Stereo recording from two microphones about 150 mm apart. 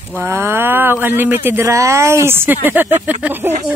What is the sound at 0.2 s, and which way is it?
Speech, 15° right (ahead or behind).